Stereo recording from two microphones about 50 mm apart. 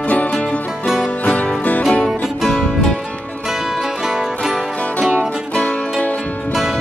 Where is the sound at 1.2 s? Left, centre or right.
Left.